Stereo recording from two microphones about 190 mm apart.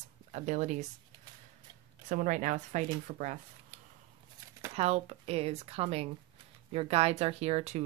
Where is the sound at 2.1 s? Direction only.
40° right (ahead or behind).